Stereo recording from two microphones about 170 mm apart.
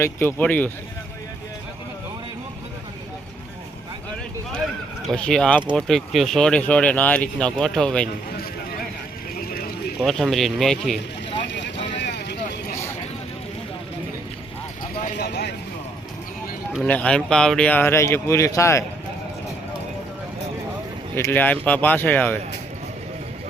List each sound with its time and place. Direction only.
0.0 s speech: 15° left (ahead or behind)
5.0 s speech: 5° left (ahead or behind)
9.4 s clip-clop: 60° left (ahead or behind)
10.0 s speech: centre (ahead or behind)
11.9 s vehicle: 85° left
15.2 s vehicle: 80° left
16.8 s speech: 5° left (ahead or behind)
21.2 s speech: 10° left (ahead or behind)